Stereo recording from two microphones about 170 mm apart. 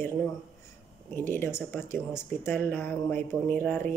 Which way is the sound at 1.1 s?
15° left (ahead or behind).